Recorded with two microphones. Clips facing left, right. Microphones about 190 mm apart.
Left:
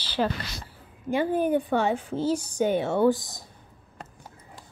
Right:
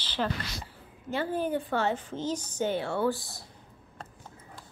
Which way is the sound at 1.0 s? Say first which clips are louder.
Left 6 dB; 15° left (ahead or behind).